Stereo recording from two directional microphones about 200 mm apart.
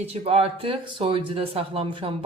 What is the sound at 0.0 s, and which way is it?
Speech, 30° right (ahead or behind).